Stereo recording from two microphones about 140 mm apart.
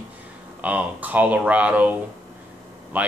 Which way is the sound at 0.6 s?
10° right (ahead or behind).